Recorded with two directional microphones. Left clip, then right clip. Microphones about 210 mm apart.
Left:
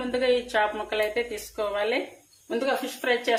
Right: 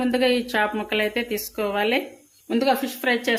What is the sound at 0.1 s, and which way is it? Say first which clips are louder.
Speech: even; 40° right (ahead or behind).